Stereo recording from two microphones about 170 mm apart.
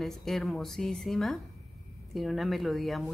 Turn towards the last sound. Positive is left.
turn(degrees=0)  # may be behind; listen again after turning